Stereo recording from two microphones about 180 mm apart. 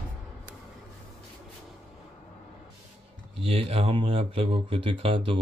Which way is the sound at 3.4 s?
30° right (ahead or behind).